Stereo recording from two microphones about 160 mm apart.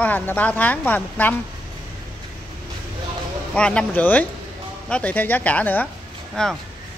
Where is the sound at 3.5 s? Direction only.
5° left (ahead or behind).